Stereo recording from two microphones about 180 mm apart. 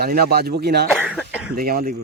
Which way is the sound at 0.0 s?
60° right (ahead or behind).